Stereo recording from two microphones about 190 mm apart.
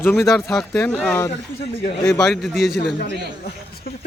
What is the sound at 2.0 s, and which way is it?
Speech, 5° left (ahead or behind).